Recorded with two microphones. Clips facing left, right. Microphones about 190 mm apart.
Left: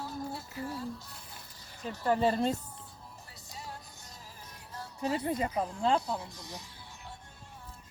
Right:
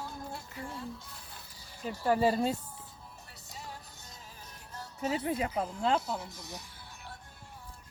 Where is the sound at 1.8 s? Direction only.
10° right (ahead or behind).